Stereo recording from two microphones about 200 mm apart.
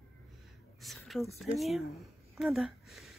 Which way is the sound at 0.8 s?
Centre (ahead or behind).